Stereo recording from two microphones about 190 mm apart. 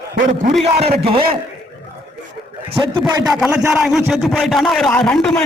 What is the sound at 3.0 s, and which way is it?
A man's voice, centre (ahead or behind).